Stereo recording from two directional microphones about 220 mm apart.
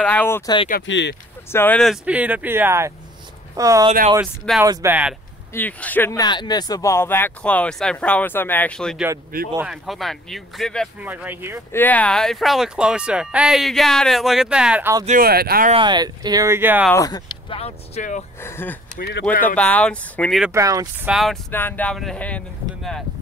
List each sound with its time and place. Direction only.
0.0 s speech: 10° left (ahead or behind)
0.8 s speech: 55° left (ahead or behind)
1.5 s speech: 10° left (ahead or behind); by 5.1 s 10° right (ahead or behind)
5.5 s speech: 10° left (ahead or behind); by 11.6 s 10° right (ahead or behind)
11.7 s speech: 10° left (ahead or behind); by 15.0 s 10° right (ahead or behind)
15.0 s speech: 40° right (ahead or behind)
15.7 s speech: 20° right (ahead or behind)
16.9 s speech: 15° left (ahead or behind); by 18.2 s 30° left (ahead or behind)
18.4 s speech: 10° left (ahead or behind)
18.9 s speech: 45° left (ahead or behind)
19.4 s speech: 5° left (ahead or behind)
20.5 s speech: 15° right (ahead or behind)
21.1 s speech: centre (ahead or behind)